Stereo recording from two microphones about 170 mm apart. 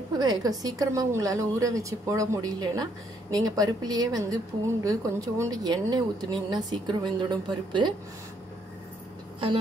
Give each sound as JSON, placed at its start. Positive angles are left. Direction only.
{"t": 0.2, "sound": "a woman's voice", "side_deg": -20}